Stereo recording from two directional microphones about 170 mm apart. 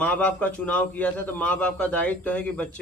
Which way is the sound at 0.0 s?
10° left (ahead or behind).